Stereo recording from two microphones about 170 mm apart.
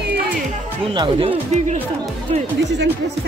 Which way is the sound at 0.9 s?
30° right (ahead or behind).